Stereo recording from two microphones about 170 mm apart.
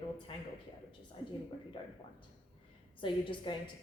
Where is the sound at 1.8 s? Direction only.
30° left (ahead or behind).